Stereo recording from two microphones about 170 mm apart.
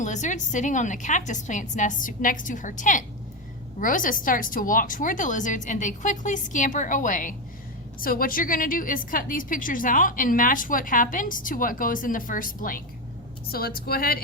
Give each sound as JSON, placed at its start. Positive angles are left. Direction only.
{"t": 0.0, "sound": "a woman's voice", "side_deg": 45}